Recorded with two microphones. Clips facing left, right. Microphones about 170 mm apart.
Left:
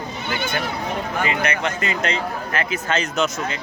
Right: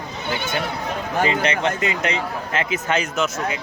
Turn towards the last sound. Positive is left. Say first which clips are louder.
# even
turn(degrees=-5)  # may be behind; listen again after turning